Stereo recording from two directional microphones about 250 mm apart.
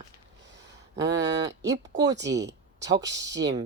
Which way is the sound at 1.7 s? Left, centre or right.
Centre.